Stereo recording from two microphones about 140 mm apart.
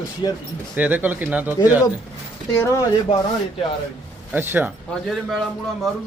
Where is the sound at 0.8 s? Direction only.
15° right (ahead or behind).